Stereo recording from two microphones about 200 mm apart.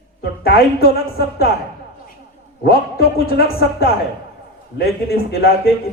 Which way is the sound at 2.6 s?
50° left (ahead or behind).